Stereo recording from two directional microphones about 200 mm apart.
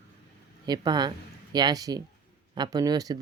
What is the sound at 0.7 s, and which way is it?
Speech, 20° right (ahead or behind).